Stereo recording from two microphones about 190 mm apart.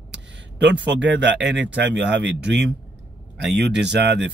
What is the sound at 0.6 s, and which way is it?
Speech, 70° right (ahead or behind).